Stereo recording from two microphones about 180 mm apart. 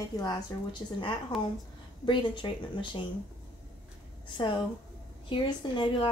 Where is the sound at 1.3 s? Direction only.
Centre (ahead or behind).